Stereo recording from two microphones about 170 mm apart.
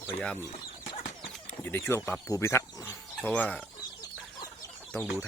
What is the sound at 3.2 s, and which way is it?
Speech, 10° left (ahead or behind).